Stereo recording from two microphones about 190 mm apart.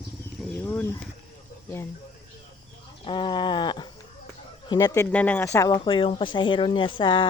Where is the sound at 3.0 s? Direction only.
25° left (ahead or behind).